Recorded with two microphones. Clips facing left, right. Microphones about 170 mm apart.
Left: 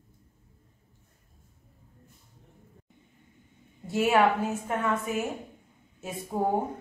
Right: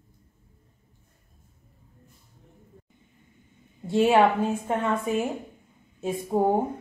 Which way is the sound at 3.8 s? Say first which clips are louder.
Right 4 dB; 30° right (ahead or behind).